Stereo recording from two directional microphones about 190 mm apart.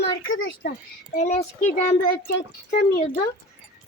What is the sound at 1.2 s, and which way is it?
Speech, 35° left (ahead or behind).